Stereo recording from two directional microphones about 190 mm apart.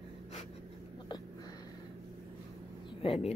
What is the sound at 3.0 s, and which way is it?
Speech, 30° left (ahead or behind).